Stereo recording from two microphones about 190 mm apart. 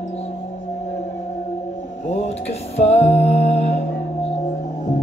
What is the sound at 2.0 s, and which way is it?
Music, 35° left (ahead or behind).